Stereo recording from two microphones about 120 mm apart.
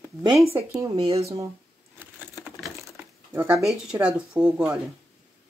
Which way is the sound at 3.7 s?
5° right (ahead or behind).